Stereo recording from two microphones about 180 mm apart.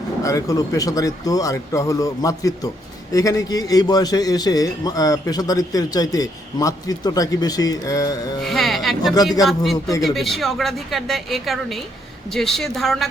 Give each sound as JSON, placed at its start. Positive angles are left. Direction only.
{"t": 0.2, "sound": "a man's voice", "side_deg": 20}
{"t": 8.4, "sound": "a woman's voice", "side_deg": 0}